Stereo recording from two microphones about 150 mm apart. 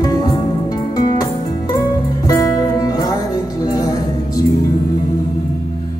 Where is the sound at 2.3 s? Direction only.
25° left (ahead or behind).